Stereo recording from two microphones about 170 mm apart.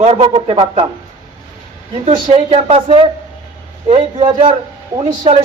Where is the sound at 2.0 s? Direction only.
30° right (ahead or behind).